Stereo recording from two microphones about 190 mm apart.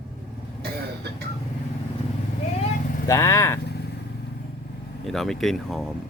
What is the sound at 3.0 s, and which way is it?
Speech, 15° left (ahead or behind).